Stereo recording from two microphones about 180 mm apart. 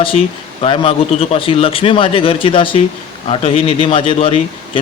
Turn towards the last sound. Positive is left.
turn(degrees=30)  # may be behind; listen again after turning